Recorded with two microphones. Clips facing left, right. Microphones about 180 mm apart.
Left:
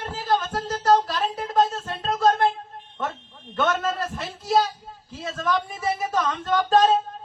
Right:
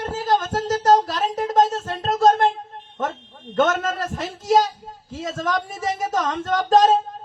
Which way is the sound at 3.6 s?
45° right (ahead or behind).